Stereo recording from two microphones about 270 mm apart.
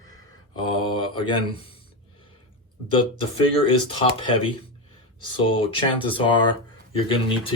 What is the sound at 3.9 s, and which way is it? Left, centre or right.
Speech, centre.